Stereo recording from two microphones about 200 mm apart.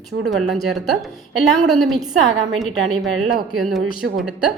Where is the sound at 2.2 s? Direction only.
90° right.